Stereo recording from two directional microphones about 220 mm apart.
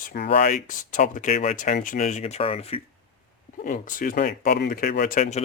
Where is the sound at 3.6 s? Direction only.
40° left (ahead or behind).